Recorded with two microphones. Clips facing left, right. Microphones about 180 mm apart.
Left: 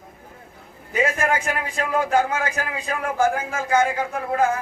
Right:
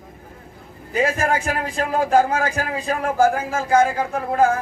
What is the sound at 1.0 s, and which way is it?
A man's voice, 35° right (ahead or behind).